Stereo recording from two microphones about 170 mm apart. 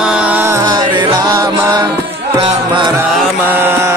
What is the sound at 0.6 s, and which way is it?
Music, 25° right (ahead or behind).